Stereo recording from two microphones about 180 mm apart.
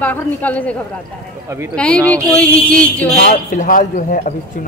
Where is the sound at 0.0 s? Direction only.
10° left (ahead or behind).